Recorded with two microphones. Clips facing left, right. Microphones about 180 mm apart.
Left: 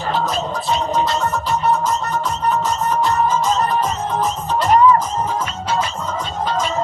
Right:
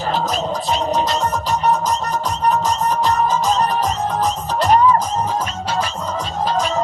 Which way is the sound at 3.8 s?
40° right (ahead or behind).